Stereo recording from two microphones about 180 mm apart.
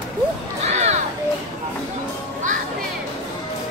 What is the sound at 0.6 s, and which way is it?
Music, 40° right (ahead or behind).